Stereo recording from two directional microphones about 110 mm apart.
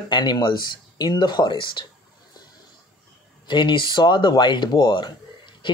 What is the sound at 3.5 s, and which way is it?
Speech, 45° left (ahead or behind).